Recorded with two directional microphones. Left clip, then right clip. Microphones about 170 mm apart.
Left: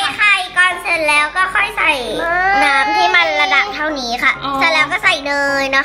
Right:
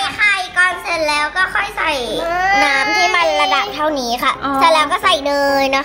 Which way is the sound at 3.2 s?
35° right (ahead or behind).